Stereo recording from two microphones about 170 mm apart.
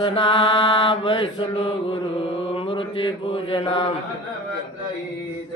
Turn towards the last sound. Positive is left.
turn(degrees=30)  # may be behind; listen again after turning